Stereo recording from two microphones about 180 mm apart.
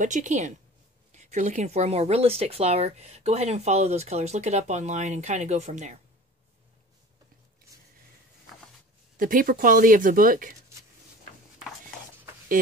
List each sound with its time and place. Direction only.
0.0 s speech: 40° right (ahead or behind)
9.2 s speech: 50° right (ahead or behind)